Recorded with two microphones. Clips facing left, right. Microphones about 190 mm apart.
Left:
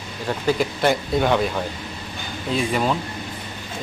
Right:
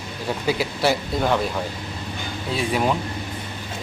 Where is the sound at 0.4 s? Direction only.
5° right (ahead or behind).